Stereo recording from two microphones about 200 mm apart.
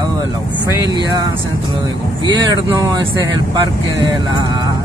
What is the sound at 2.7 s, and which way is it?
Speech, 20° right (ahead or behind).